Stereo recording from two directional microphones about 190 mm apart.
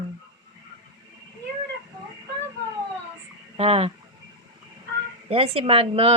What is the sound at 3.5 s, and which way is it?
Speech, 30° right (ahead or behind).